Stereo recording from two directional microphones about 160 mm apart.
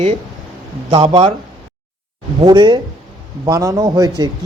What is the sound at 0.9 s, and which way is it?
Speech, 35° right (ahead or behind).